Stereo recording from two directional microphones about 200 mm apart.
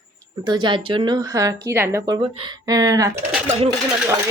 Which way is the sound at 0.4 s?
20° right (ahead or behind).